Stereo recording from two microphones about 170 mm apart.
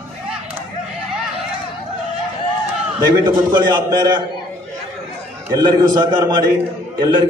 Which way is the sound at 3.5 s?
25° right (ahead or behind).